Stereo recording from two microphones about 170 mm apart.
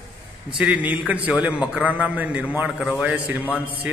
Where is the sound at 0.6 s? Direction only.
10° right (ahead or behind).